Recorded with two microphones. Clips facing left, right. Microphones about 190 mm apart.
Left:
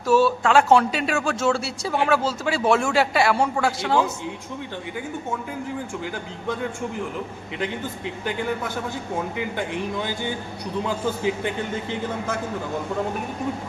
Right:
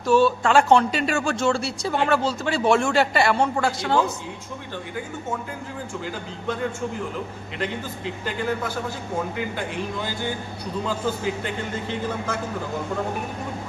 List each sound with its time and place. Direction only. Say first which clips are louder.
0.1 s speech: even; 5° left (ahead or behind)
7.6 s speech: even; 20° left (ahead or behind)
10.8 s speech: left 1 dB; 15° left (ahead or behind)